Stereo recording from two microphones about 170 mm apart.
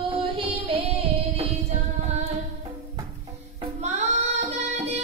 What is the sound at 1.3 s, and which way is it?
Music, 40° right (ahead or behind).